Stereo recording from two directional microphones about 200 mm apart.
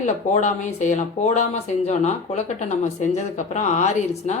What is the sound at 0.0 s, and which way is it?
Speech, 35° left (ahead or behind).